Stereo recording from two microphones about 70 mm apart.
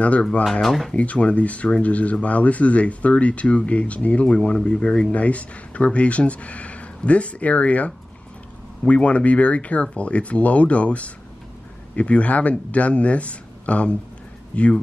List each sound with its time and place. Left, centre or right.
0.0 s speech: centre
0.5 s speech: centre
0.9 s speech: centre